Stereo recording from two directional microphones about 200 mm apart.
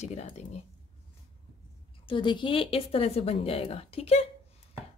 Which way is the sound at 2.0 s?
25° left (ahead or behind).